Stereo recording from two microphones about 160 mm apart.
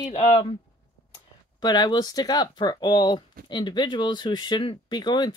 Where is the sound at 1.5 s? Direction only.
25° left (ahead or behind).